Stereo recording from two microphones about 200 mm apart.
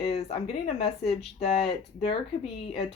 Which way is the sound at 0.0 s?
30° left (ahead or behind).